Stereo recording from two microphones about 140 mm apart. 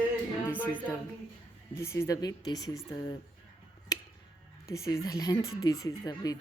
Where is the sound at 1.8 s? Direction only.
20° left (ahead or behind).